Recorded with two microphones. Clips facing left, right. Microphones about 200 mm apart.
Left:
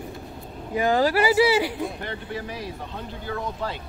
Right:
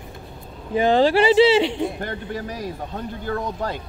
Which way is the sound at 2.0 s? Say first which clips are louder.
Right 3 dB; 45° right (ahead or behind).